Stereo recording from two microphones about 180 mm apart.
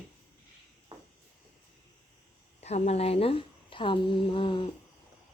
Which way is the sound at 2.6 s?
35° left (ahead or behind).